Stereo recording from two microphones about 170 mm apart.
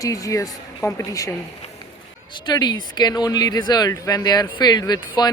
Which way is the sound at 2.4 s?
25° left (ahead or behind).